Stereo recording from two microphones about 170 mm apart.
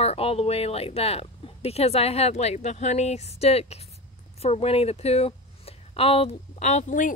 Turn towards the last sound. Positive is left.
turn(degrees=50)  # may be behind; listen again after turning